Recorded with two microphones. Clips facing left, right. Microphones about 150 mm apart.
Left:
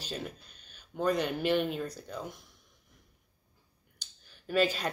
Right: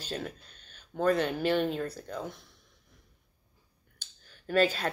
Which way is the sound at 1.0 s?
15° left (ahead or behind).